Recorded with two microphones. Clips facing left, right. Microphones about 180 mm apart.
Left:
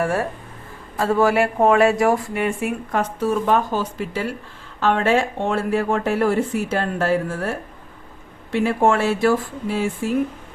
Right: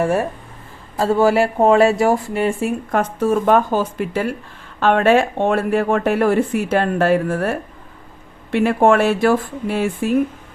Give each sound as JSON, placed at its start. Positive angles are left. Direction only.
{"t": 0.0, "sound": "speech", "side_deg": -25}
{"t": 2.9, "sound": "a woman's voice", "side_deg": -50}
{"t": 8.5, "sound": "speech", "side_deg": -65}